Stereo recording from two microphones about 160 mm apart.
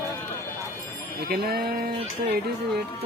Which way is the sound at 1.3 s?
75° right (ahead or behind).